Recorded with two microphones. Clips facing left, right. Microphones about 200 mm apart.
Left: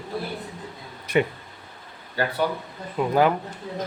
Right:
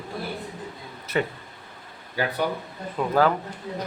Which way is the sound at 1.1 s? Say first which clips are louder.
Left 4 dB; 15° left (ahead or behind).